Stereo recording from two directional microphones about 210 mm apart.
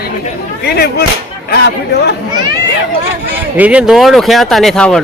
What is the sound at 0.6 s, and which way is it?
Speech, 50° left (ahead or behind).